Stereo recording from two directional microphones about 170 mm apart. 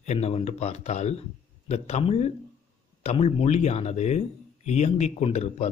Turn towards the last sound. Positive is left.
turn(degrees=40)  # may be behind; listen again after turning